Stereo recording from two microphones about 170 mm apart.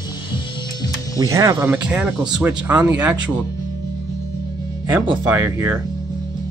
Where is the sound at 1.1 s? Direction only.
20° right (ahead or behind).